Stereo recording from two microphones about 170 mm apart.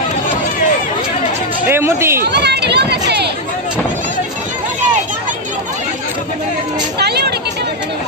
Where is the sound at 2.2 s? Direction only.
80° right.